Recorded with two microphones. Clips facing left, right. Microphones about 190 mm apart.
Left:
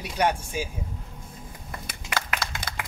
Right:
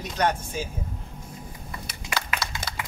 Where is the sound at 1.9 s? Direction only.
50° left (ahead or behind).